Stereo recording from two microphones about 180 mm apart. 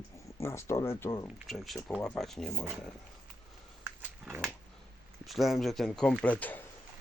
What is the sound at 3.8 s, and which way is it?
Dog, 15° right (ahead or behind).